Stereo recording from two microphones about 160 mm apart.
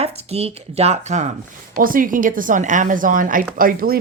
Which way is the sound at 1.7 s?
60° right (ahead or behind).